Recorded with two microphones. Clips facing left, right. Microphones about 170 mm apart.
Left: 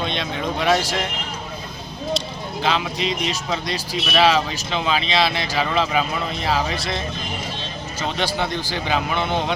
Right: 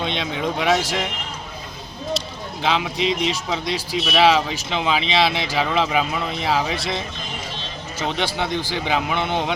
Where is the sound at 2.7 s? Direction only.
15° right (ahead or behind).